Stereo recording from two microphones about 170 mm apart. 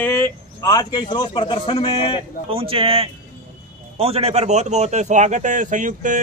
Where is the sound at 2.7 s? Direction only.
35° right (ahead or behind).